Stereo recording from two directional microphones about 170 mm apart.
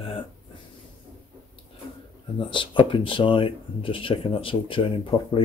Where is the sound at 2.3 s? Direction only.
30° left (ahead or behind).